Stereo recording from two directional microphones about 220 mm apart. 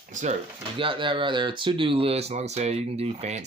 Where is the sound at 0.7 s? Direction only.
25° right (ahead or behind).